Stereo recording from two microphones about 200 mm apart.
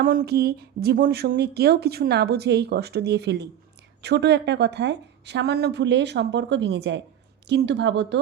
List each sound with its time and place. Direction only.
0.0 s a woman's voice: 45° right (ahead or behind); by 8.2 s 60° right (ahead or behind)